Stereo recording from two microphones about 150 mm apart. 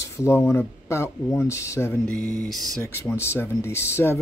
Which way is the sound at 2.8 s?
15° left (ahead or behind).